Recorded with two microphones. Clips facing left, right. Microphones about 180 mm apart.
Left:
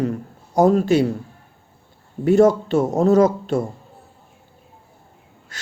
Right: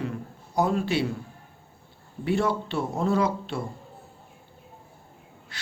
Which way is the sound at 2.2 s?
45° left (ahead or behind).